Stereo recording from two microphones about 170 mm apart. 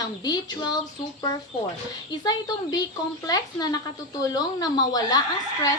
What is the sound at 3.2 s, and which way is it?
Speech, 25° left (ahead or behind).